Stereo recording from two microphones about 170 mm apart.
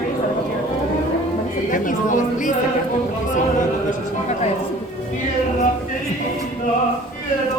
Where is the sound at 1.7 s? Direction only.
50° left (ahead or behind).